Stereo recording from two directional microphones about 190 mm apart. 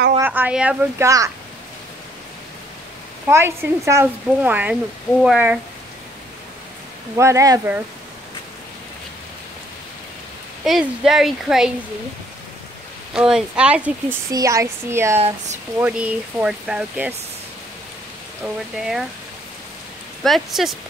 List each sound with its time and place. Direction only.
0.2 s speech: 10° right (ahead or behind)
3.3 s speech: 15° right (ahead or behind)
7.2 s speech: 15° right (ahead or behind)
10.6 s speech: centre (ahead or behind)
13.1 s speech: 5° right (ahead or behind)
15.1 s speech: 35° right (ahead or behind)
15.8 s speech: 5° right (ahead or behind)
18.4 s speech: 5° right (ahead or behind)
20.2 s speech: centre (ahead or behind)